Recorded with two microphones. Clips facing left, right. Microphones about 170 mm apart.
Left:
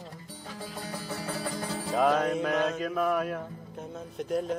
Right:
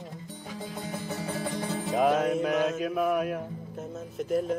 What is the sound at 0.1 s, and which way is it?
Music, 20° right (ahead or behind).